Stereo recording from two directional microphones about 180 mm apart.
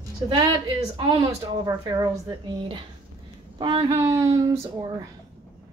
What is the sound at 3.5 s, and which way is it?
Speech, 25° right (ahead or behind).